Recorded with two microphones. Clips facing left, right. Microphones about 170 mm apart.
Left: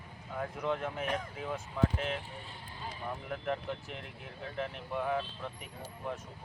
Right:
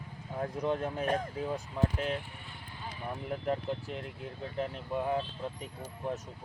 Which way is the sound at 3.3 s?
30° right (ahead or behind).